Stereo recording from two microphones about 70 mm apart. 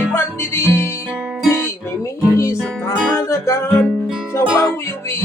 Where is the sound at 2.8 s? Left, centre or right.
Left.